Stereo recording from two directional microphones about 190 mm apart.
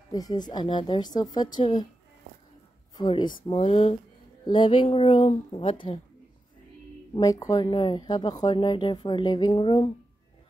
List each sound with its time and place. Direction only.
0.1 s speech: 20° left (ahead or behind)
3.0 s a woman's voice: 25° left (ahead or behind)
7.2 s speech: 20° left (ahead or behind)